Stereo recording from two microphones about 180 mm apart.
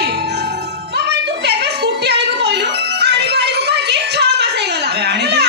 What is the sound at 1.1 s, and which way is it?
Music, 70° right (ahead or behind).